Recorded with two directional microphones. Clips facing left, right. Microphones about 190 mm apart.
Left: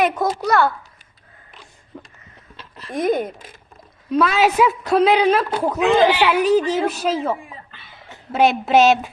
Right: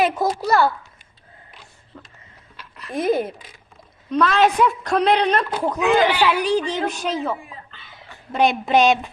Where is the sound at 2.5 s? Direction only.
25° left (ahead or behind).